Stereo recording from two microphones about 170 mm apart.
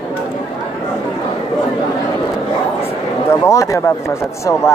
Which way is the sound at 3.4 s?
20° left (ahead or behind).